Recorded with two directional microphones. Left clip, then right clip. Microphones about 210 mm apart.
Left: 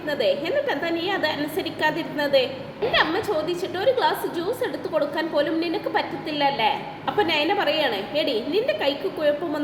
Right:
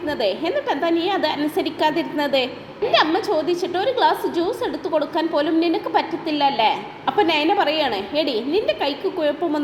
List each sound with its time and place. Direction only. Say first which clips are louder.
0.1 s a woman's voice: even; 15° right (ahead or behind)
3.5 s a woman's voice: right 1 dB; 15° right (ahead or behind)